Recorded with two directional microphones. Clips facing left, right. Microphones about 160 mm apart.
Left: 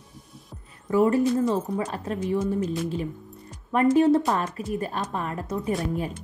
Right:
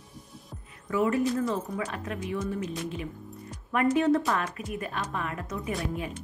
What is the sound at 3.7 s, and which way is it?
A woman's voice, 30° left (ahead or behind).